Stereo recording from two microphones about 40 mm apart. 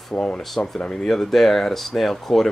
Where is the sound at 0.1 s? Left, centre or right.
Left.